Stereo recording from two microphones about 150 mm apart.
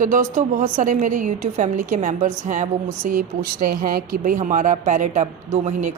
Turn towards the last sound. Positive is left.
turn(degrees=-50)  # may be behind; listen again after turning